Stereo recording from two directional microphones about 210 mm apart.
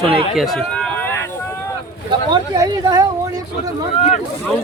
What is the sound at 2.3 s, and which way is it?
Speech, 20° right (ahead or behind).